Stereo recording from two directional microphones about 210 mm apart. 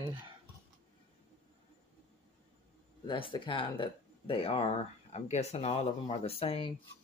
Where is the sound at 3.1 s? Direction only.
25° left (ahead or behind).